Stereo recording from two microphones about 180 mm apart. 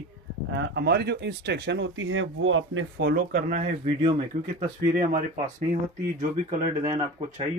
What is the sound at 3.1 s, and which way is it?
Speech, 45° right (ahead or behind).